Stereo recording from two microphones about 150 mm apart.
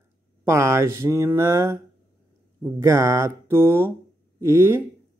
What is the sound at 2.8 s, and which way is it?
A man's voice, 20° right (ahead or behind).